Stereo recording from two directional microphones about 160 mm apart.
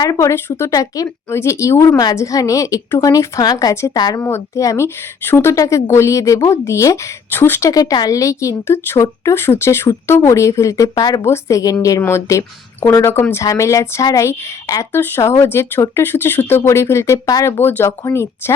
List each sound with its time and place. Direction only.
0.0 s a woman's voice: 20° left (ahead or behind)